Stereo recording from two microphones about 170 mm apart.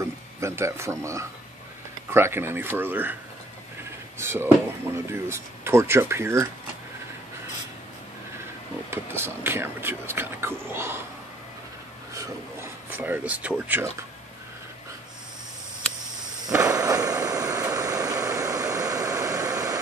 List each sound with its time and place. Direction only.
0.0 s speech: 15° right (ahead or behind)
4.2 s speech: 15° right (ahead or behind)
8.9 s speech: 15° right (ahead or behind)
12.1 s speech: 15° right (ahead or behind)
16.7 s vehicle: 20° right (ahead or behind)